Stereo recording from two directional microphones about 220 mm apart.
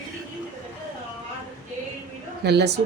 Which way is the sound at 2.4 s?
50° right (ahead or behind).